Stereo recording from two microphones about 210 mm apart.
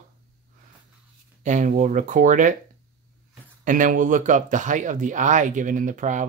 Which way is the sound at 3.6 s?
40° right (ahead or behind).